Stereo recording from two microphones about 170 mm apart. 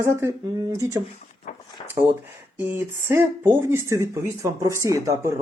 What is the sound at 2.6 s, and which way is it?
Speech, 15° right (ahead or behind).